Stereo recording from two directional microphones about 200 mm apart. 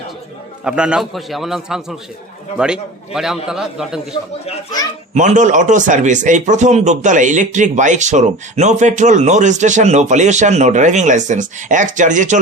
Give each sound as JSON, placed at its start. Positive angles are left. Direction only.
{"t": 0.6, "sound": "a man's voice", "side_deg": -5}
{"t": 5.1, "sound": "speech", "side_deg": -40}